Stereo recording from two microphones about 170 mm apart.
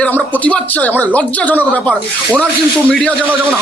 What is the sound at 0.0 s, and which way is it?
Speech, 10° left (ahead or behind).